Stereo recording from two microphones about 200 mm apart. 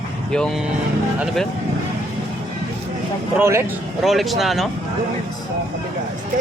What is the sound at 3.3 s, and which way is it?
Speech, 15° right (ahead or behind).